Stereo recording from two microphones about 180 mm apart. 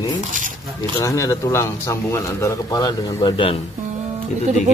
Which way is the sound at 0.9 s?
20° left (ahead or behind).